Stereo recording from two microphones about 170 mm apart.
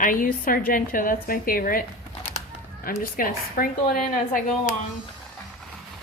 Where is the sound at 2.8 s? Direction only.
55° left (ahead or behind).